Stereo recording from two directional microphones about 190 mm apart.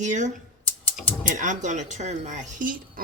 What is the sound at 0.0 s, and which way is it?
Speech, 40° right (ahead or behind).